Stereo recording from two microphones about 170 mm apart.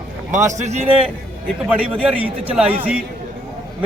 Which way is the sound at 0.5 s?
45° right (ahead or behind).